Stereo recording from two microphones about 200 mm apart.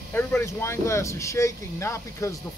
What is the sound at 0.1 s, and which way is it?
Speech, 10° left (ahead or behind).